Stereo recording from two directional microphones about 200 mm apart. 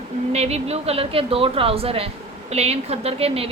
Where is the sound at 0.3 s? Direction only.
30° right (ahead or behind).